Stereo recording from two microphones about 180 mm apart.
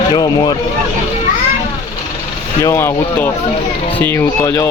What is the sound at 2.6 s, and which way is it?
Speech, 15° left (ahead or behind).